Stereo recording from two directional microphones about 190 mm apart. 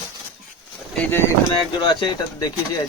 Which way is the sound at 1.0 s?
10° left (ahead or behind).